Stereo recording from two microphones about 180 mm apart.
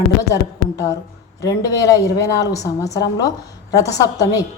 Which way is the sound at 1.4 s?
20° left (ahead or behind).